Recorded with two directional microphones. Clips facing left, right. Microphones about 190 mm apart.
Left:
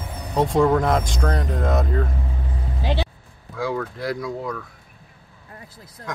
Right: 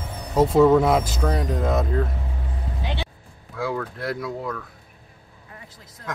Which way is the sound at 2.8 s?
35° left (ahead or behind).